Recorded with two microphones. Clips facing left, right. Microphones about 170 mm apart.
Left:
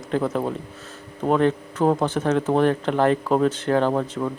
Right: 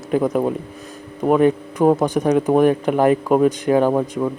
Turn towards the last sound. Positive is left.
turn(degrees=-10)  # may be behind; listen again after turning